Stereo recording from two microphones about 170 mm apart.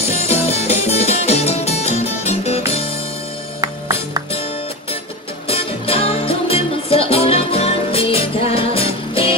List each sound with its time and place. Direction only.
0.1 s music: 35° left (ahead or behind)
5.5 s music: 35° left (ahead or behind)